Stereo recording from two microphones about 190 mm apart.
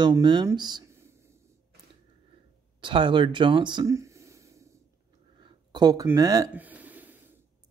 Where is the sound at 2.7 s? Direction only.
25° right (ahead or behind).